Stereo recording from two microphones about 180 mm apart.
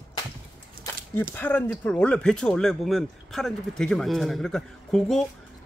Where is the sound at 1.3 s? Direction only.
10° left (ahead or behind).